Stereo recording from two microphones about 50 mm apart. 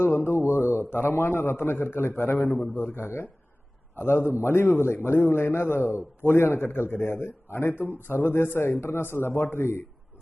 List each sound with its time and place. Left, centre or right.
0.0 s speech: left
0.3 s a man's voice: left
0.5 s speech: right
0.8 s a man's voice: left
7.7 s a man's voice: left